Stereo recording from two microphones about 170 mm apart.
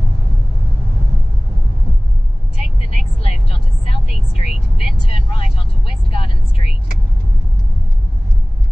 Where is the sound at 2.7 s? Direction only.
35° left (ahead or behind).